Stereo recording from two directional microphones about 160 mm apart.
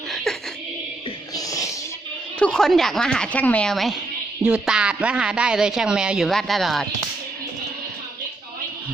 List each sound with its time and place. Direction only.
1.4 s music: 20° left (ahead or behind)
2.4 s speech: 5° left (ahead or behind)